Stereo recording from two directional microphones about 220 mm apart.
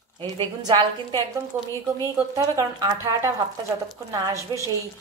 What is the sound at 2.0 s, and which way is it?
A woman's voice, 15° right (ahead or behind).